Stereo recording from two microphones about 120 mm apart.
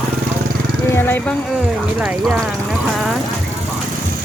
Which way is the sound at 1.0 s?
15° left (ahead or behind).